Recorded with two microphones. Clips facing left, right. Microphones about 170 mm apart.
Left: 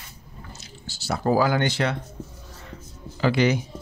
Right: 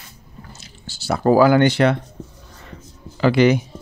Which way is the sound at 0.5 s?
60° right (ahead or behind).